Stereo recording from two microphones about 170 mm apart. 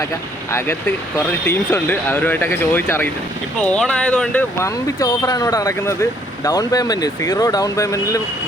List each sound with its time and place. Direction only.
0.5 s speech: 15° left (ahead or behind)
4.9 s speech: 25° left (ahead or behind)